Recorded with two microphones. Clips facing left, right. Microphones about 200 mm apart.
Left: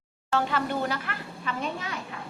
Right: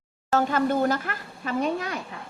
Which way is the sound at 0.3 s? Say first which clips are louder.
Right 5 dB; 45° right (ahead or behind).